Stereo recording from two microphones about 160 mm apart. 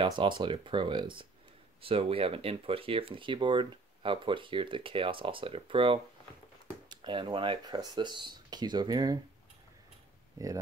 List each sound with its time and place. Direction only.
0.2 s speech: 30° right (ahead or behind)